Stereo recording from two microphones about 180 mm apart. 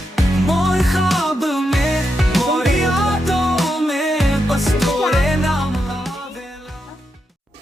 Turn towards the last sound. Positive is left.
turn(degrees=0)  # may be behind; listen again after turning